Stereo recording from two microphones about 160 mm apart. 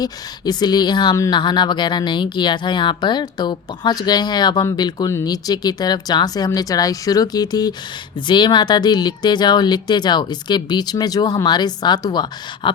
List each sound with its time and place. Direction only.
0.0 s speech: 25° left (ahead or behind)